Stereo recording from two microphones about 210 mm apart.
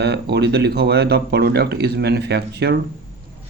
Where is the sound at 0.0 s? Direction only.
50° right (ahead or behind).